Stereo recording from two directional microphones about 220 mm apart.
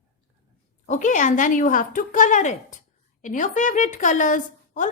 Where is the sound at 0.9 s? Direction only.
35° left (ahead or behind).